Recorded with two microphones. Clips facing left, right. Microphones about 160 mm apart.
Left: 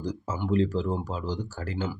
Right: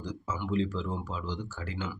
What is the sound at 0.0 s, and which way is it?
Speech, 40° left (ahead or behind).